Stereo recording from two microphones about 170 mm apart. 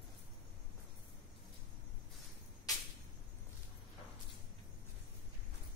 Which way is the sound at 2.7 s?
20° left (ahead or behind).